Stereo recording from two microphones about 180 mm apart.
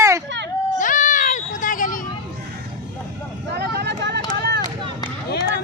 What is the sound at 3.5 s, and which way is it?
Vehicle, 65° right (ahead or behind).